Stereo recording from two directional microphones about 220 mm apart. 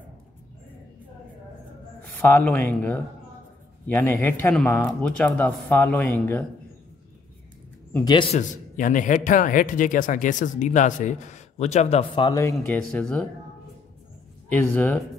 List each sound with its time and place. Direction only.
2.1 s speech: 10° left (ahead or behind)
8.0 s a man's voice: 20° left (ahead or behind)
8.4 s speech: 35° left (ahead or behind); by 13.3 s 5° left (ahead or behind)
14.5 s speech: 10° left (ahead or behind)